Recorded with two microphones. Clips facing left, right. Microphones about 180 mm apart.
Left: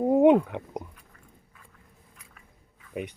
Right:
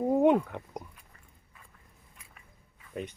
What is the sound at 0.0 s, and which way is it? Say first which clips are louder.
Speech: left 5 dB; 15° left (ahead or behind).